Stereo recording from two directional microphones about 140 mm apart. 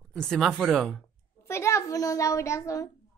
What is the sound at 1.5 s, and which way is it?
A woman's voice, 20° left (ahead or behind).